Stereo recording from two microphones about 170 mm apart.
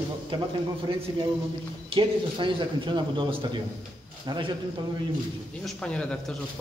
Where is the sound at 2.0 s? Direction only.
30° right (ahead or behind).